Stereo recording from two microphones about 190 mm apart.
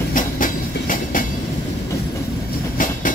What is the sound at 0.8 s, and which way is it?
Train, 45° left (ahead or behind).